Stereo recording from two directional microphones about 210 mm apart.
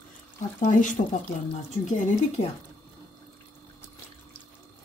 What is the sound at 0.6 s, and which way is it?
A woman's voice, 35° left (ahead or behind).